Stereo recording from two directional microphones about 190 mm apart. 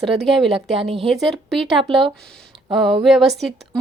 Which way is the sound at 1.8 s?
25° right (ahead or behind).